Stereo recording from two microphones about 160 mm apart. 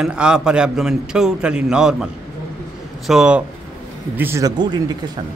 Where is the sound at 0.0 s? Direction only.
5° right (ahead or behind).